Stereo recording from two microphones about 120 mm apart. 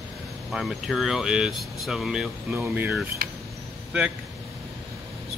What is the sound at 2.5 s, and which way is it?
Speech, 15° right (ahead or behind).